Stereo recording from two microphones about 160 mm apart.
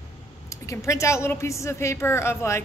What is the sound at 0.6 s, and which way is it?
A woman's voice, 20° left (ahead or behind).